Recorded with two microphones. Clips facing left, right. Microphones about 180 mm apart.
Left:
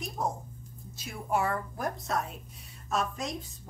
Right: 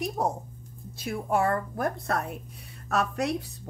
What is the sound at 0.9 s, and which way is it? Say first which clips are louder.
A woman's voice: right 4 dB; 55° right (ahead or behind).